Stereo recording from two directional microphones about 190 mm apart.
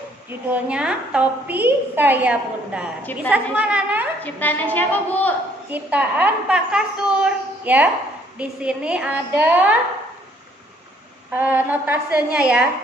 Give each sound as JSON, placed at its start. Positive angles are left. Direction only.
{"t": 0.3, "sound": "a woman's voice", "side_deg": -5}
{"t": 4.2, "sound": "a woman's voice", "side_deg": 10}
{"t": 5.7, "sound": "a woman's voice", "side_deg": -10}
{"t": 11.3, "sound": "a woman's voice", "side_deg": -10}